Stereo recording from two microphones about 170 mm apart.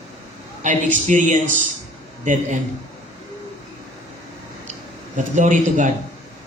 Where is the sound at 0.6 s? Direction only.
50° right (ahead or behind).